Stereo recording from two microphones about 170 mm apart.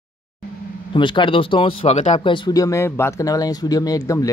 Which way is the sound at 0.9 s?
30° left (ahead or behind).